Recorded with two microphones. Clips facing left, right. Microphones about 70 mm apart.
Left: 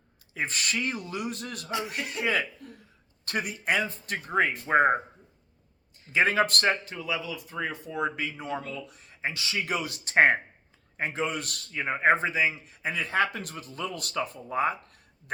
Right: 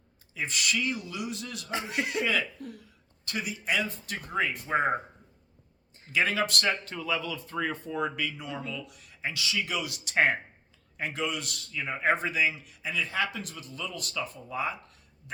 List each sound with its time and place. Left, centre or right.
0.3 s speech: left
2.2 s speech: left
3.2 s a man's voice: left
6.1 s a man's voice: left
6.8 s speech: centre
8.0 s a man's voice: left
11.3 s a man's voice: left